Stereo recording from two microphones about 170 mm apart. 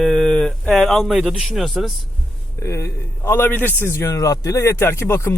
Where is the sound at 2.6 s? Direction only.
15° left (ahead or behind).